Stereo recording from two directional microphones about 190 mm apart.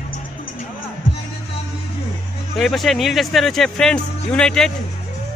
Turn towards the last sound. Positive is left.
turn(degrees=5)  # may be behind; listen again after turning